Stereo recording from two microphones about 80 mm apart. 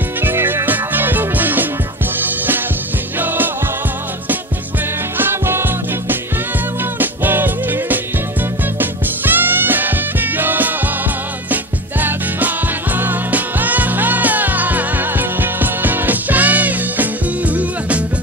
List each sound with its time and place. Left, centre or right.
0.2 s music: right
5.1 s music: right